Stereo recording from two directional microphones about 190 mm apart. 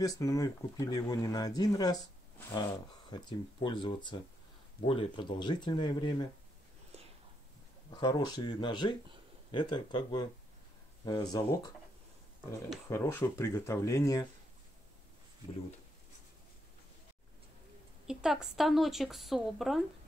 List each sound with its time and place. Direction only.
0.0 s speech: 20° left (ahead or behind)
3.1 s speech: 25° left (ahead or behind)
7.9 s speech: 20° left (ahead or behind)
12.9 s speech: 15° left (ahead or behind)
18.0 s speech: 5° right (ahead or behind)